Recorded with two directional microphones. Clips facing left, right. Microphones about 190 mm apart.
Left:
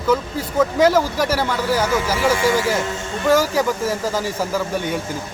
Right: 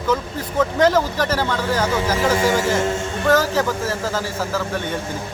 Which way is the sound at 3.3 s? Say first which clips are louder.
Left 1 dB; 10° left (ahead or behind).